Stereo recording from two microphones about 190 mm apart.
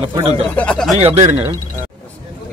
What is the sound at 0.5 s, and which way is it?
Speech, 5° left (ahead or behind).